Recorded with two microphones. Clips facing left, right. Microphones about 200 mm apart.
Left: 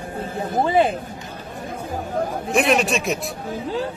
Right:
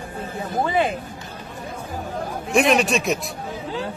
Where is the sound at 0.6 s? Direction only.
30° left (ahead or behind).